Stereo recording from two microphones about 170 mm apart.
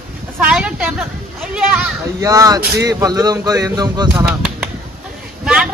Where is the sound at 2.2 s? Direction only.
20° right (ahead or behind).